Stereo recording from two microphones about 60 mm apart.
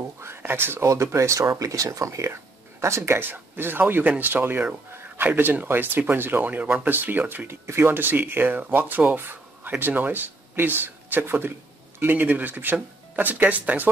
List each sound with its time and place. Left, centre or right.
0.2 s a sound: right
0.8 s speech: right
3.2 s speech: right